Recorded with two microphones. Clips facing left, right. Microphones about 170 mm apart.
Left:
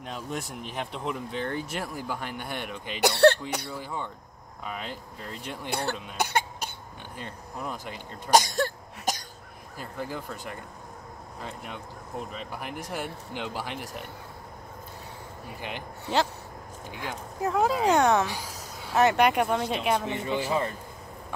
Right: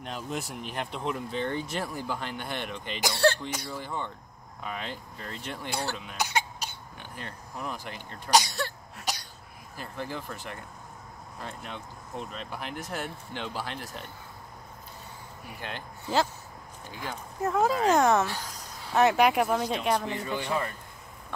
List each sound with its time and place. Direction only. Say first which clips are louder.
0.0 s speech: even; centre (ahead or behind)
3.0 s speech: left 6 dB; 60° left (ahead or behind)
3.7 s speech: even; 10° left (ahead or behind)
5.7 s speech: left 3 dB; 60° left (ahead or behind)
7.2 s speech: left 1 dB; 15° left (ahead or behind)
8.3 s a sound: left 3 dB; 50° left (ahead or behind)
9.1 s cough: left 4 dB; 45° left (ahead or behind)
9.8 s speech: left 1 dB; 10° left (ahead or behind)
15.6 s speech: left 2 dB; 15° left (ahead or behind)
17.0 s speech: left 1 dB; centre (ahead or behind)
18.2 s speech: left 1 dB; 10° left (ahead or behind)
20.1 s speech: left 3 dB; 20° left (ahead or behind)